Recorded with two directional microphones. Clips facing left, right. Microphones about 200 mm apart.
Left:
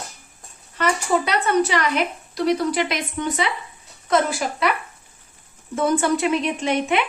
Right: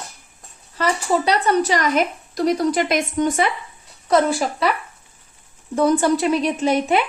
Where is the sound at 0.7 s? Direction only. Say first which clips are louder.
Right 1 dB; 35° right (ahead or behind).